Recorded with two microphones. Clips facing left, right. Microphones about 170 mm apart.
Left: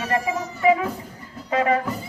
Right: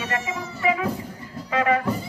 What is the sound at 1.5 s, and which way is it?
Music, 35° left (ahead or behind).